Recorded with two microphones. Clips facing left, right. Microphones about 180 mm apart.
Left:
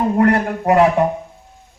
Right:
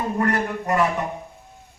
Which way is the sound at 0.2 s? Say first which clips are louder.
Left 7 dB; 70° left (ahead or behind).